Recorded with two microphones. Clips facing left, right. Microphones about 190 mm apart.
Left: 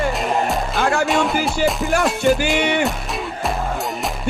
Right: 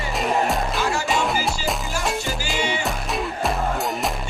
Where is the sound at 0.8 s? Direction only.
55° left (ahead or behind).